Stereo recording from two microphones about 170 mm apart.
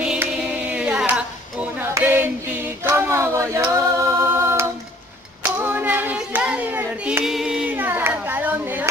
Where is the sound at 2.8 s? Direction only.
15° right (ahead or behind).